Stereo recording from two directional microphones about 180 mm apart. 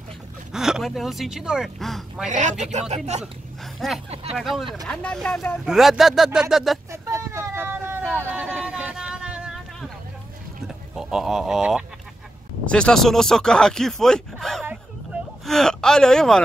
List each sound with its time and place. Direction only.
0.5 s speech: centre (ahead or behind)
2.2 s speech: 40° right (ahead or behind)
3.6 s a sound: centre (ahead or behind)
4.1 s speech: 35° right (ahead or behind)
4.4 s speech: centre (ahead or behind)
6.9 s vehicle: 15° right (ahead or behind)
8.1 s a sound: 10° right (ahead or behind)
10.7 s speech: centre (ahead or behind)